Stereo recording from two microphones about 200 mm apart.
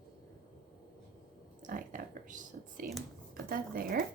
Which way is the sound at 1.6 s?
40° right (ahead or behind).